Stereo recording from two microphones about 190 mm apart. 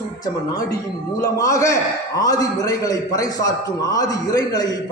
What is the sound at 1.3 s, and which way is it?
A man's voice, 15° left (ahead or behind).